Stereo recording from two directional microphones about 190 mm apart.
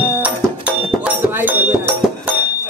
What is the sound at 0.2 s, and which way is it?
Music, 5° right (ahead or behind).